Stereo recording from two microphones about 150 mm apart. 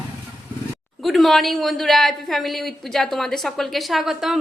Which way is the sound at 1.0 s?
Centre (ahead or behind).